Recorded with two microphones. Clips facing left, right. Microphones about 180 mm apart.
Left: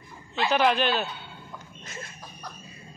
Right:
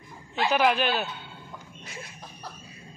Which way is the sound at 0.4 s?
10° right (ahead or behind).